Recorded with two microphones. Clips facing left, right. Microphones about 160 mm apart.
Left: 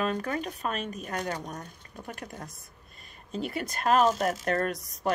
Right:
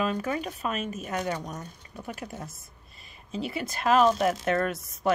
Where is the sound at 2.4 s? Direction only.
Centre (ahead or behind).